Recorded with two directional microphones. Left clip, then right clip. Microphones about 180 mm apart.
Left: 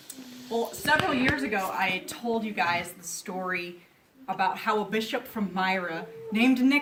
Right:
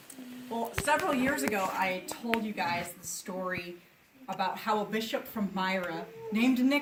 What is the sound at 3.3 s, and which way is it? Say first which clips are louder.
Speech: left 4 dB; 40° left (ahead or behind).